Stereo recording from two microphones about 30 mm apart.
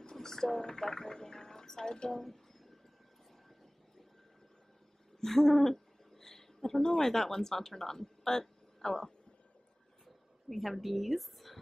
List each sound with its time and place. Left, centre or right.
0.0 s a woman's voice: centre
2.2 s a sound: centre
5.2 s speech: centre
10.0 s speech: centre